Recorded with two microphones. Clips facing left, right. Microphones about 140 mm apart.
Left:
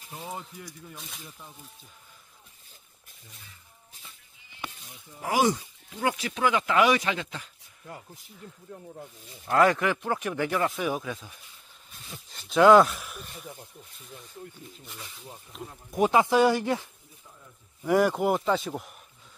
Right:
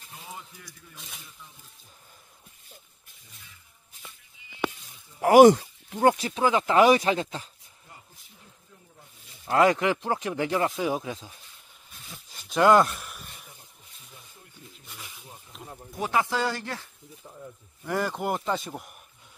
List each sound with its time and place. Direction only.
0.1 s a sound: 35° left (ahead or behind)
0.9 s speech: centre (ahead or behind)
5.2 s speech: 60° right (ahead or behind)
5.9 s speech: 40° right (ahead or behind)
8.6 s speech: 60° left (ahead or behind)
9.5 s speech: 20° right (ahead or behind)
11.9 s speech: centre (ahead or behind)
14.9 s speech: centre (ahead or behind)
16.0 s speech: 20° left (ahead or behind); by 18.9 s centre (ahead or behind)